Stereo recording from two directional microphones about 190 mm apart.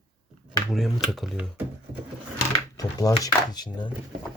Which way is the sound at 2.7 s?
20° left (ahead or behind).